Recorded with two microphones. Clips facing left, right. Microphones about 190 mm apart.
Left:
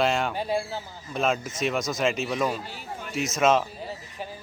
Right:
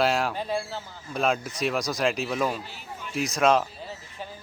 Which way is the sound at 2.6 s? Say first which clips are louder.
Left 3 dB; 45° left (ahead or behind).